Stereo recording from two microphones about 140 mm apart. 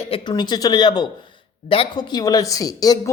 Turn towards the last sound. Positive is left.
turn(degrees=25)  # may be behind; listen again after turning